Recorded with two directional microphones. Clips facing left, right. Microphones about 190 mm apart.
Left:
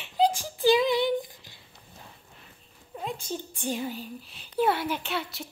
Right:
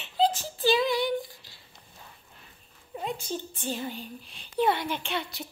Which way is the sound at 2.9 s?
Centre (ahead or behind).